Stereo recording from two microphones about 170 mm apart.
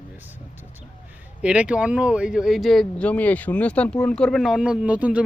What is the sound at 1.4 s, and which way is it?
Speech, 5° right (ahead or behind).